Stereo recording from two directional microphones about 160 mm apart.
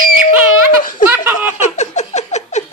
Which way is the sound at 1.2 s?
10° right (ahead or behind).